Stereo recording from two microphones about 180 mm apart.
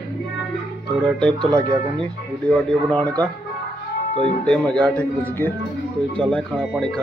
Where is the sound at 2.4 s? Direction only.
5° left (ahead or behind).